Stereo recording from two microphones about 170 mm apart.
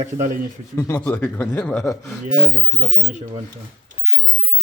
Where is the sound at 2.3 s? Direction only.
50° right (ahead or behind).